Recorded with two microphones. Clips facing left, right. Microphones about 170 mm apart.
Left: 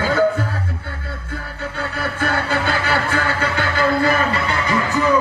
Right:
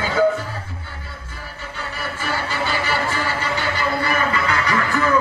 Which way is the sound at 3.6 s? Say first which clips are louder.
Left 7 dB; 45° left (ahead or behind).